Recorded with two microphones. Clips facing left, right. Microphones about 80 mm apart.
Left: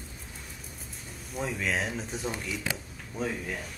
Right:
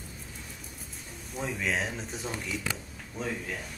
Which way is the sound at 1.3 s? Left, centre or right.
Centre.